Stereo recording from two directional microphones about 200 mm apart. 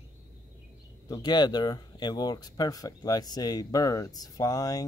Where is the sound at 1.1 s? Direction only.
20° left (ahead or behind).